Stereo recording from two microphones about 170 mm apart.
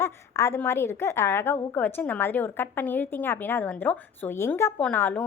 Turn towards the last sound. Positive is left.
turn(degrees=10)  # may be behind; listen again after turning